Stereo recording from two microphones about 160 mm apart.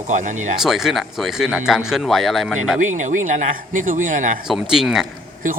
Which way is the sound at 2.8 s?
50° right (ahead or behind).